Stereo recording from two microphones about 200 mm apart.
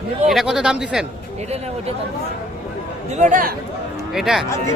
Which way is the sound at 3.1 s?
35° right (ahead or behind).